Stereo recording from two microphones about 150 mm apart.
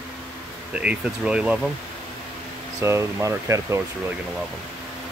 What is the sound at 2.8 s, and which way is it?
Speech, 20° right (ahead or behind).